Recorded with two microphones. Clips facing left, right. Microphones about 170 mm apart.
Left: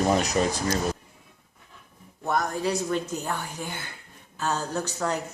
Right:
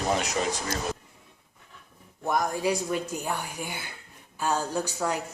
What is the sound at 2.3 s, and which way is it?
A woman's voice, 10° right (ahead or behind).